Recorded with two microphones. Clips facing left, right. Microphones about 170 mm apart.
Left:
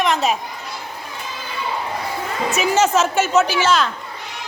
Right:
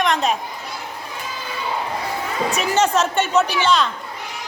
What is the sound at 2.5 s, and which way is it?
A man's voice, 5° left (ahead or behind).